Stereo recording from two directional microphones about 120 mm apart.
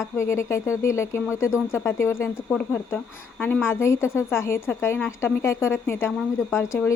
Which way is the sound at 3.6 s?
25° left (ahead or behind).